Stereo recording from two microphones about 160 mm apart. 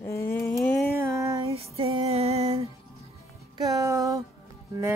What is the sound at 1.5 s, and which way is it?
Music, 35° right (ahead or behind).